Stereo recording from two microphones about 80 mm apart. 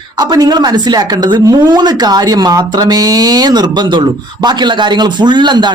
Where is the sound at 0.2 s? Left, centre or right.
Right.